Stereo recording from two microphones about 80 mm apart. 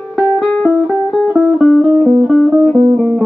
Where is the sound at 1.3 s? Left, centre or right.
Centre.